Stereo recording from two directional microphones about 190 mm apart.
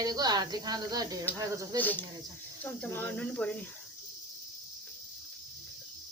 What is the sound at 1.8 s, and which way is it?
Speech, 10° left (ahead or behind).